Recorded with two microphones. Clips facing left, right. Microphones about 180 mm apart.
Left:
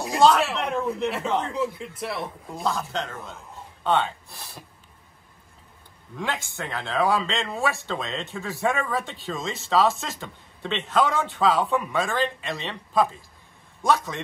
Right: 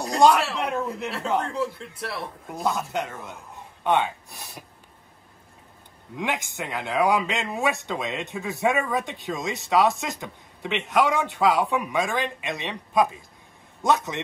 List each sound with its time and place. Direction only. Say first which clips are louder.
0.5 s speech: left 1 dB; 5° right (ahead or behind)
2.9 s speech: right 1 dB; 15° right (ahead or behind)
6.1 s a man's voice: right 2 dB; 15° right (ahead or behind)